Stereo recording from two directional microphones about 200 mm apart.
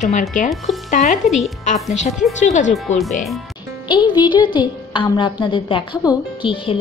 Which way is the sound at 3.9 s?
20° left (ahead or behind).